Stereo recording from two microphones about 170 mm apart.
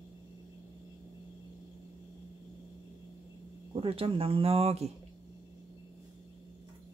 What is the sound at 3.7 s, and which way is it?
Speech, 35° right (ahead or behind).